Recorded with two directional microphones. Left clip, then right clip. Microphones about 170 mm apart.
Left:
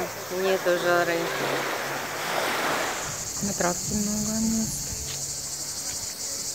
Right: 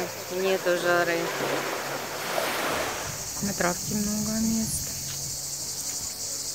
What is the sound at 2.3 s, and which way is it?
Waves, 50° right (ahead or behind).